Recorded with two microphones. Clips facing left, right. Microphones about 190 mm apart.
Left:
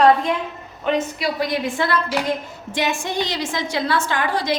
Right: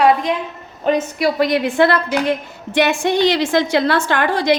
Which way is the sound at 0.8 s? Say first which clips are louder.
Right 4 dB; 40° right (ahead or behind).